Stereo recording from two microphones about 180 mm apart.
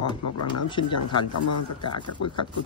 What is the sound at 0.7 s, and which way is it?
Speech, 25° left (ahead or behind).